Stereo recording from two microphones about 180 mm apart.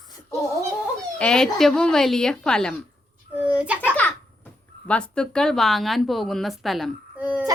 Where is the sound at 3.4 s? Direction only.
5° right (ahead or behind).